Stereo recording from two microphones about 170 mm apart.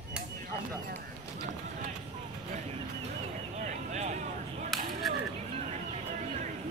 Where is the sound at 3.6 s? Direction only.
45° right (ahead or behind).